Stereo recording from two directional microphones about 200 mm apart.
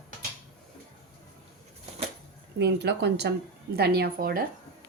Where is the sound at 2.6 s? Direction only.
55° right (ahead or behind).